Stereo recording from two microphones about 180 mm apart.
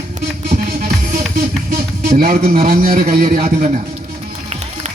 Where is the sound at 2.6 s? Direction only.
55° right (ahead or behind).